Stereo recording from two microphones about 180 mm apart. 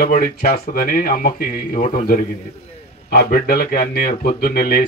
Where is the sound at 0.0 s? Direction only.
55° left (ahead or behind).